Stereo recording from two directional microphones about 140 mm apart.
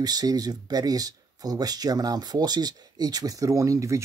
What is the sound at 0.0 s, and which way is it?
Speech, 30° right (ahead or behind).